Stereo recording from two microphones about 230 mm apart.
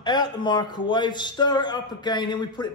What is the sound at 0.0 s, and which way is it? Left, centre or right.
A man's voice, centre.